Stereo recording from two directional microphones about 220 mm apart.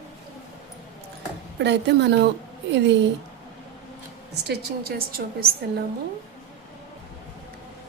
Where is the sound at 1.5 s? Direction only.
50° right (ahead or behind).